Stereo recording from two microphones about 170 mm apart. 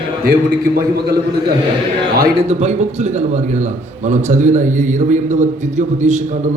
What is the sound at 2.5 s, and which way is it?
A man's voice, 40° right (ahead or behind).